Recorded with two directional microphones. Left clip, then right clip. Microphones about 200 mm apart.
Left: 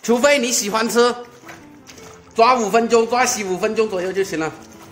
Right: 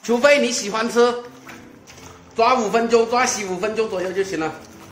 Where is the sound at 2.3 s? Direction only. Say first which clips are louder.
Left 3 dB; 55° left (ahead or behind).